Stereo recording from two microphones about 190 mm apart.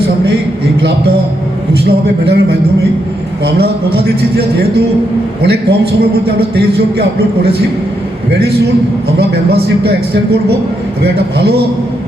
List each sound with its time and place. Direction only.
0.8 s a man's voice: 60° right (ahead or behind)
8.3 s a man's voice: 60° right (ahead or behind)
11.0 s a man's voice: 60° right (ahead or behind)